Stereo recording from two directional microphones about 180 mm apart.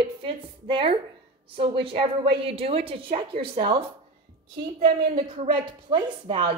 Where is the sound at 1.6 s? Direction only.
30° right (ahead or behind).